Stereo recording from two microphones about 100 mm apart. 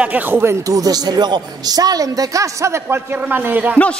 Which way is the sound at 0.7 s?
40° right (ahead or behind).